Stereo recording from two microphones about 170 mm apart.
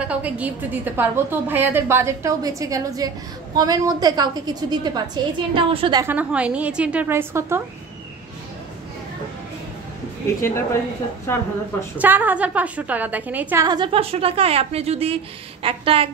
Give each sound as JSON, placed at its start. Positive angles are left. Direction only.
{"t": 0.0, "sound": "a woman's voice", "side_deg": -10}
{"t": 6.0, "sound": "a woman's voice", "side_deg": -10}
{"t": 10.4, "sound": "a woman's voice", "side_deg": 15}
{"t": 12.0, "sound": "a woman's voice", "side_deg": -10}
{"t": 13.7, "sound": "a woman's voice", "side_deg": -30}